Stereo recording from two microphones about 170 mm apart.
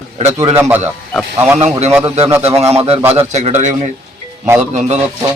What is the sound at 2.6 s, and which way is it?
A man's voice, 35° right (ahead or behind).